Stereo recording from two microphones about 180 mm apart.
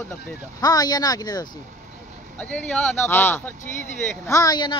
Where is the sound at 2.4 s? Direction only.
10° left (ahead or behind).